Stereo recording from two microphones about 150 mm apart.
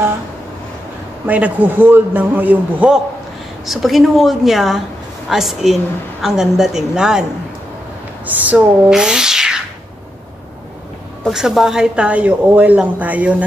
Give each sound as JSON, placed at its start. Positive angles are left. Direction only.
{"t": 1.2, "sound": "a woman's voice", "side_deg": -10}
{"t": 8.3, "sound": "speech", "side_deg": -10}
{"t": 11.2, "sound": "speech", "side_deg": 0}